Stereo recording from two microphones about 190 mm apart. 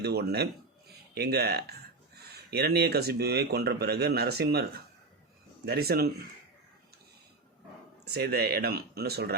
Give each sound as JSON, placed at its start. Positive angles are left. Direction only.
{"t": 0.0, "sound": "speech", "side_deg": -55}
{"t": 8.0, "sound": "speech", "side_deg": -55}